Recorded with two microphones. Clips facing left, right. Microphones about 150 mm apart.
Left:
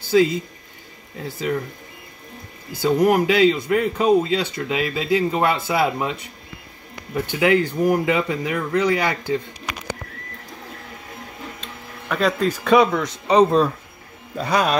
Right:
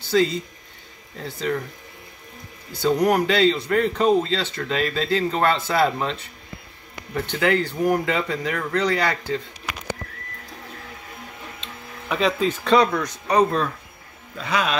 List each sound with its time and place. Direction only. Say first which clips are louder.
0.1 s speech: left 3 dB; 5° left (ahead or behind)
2.7 s speech: left 2 dB; 5° left (ahead or behind)
12.1 s speech: left 1 dB; centre (ahead or behind); by 13.7 s 30° left (ahead or behind)
14.3 s speech: left 4 dB; 40° left (ahead or behind)